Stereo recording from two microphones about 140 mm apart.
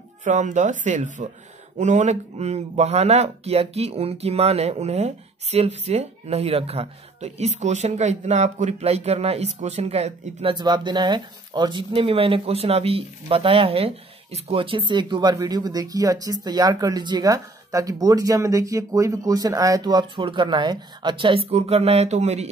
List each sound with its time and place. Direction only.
0.2 s speech: 60° right (ahead or behind)
10.5 s speech: 30° right (ahead or behind); by 22.5 s 50° right (ahead or behind)